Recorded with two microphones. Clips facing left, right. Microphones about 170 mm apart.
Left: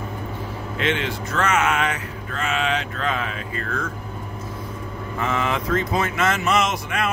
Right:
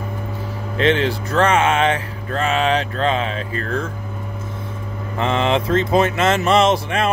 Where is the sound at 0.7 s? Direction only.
35° right (ahead or behind).